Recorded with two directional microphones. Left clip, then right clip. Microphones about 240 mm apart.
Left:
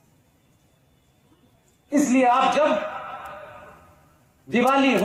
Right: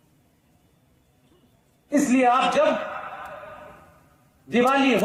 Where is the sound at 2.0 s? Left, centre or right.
Right.